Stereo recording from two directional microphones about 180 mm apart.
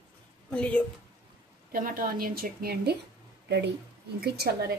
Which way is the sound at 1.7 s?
50° right (ahead or behind).